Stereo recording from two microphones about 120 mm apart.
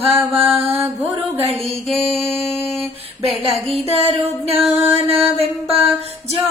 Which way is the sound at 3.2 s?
Centre (ahead or behind).